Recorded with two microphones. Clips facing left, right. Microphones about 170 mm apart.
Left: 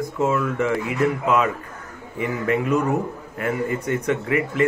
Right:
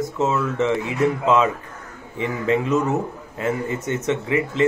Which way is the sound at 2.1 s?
25° right (ahead or behind).